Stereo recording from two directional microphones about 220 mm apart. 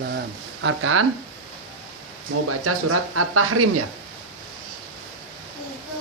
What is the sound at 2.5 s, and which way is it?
Speech, 90° right.